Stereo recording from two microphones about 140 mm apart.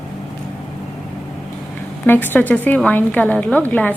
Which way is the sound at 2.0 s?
15° left (ahead or behind).